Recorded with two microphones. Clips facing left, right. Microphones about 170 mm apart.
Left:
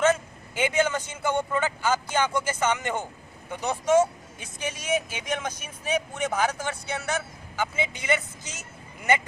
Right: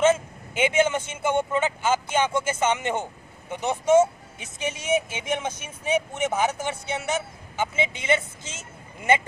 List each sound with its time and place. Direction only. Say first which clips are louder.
0.0 s speech: right 3 dB; 25° right (ahead or behind)